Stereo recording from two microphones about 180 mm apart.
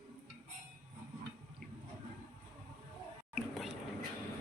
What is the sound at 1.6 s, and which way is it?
Toilet flush, 55° right (ahead or behind).